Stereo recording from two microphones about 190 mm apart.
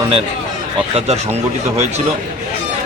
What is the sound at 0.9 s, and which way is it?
Speech, 35° right (ahead or behind).